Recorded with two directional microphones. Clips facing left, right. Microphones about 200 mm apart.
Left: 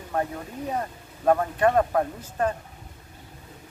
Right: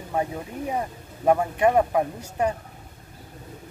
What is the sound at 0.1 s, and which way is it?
Speech, 15° right (ahead or behind).